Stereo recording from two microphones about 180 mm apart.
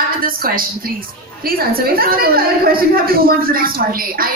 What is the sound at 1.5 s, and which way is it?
A man's voice, 55° right (ahead or behind).